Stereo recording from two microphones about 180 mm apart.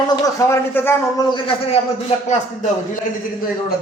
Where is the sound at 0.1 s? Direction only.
15° left (ahead or behind); by 2.6 s 40° left (ahead or behind).